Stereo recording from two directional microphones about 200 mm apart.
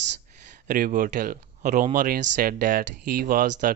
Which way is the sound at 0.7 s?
45° right (ahead or behind).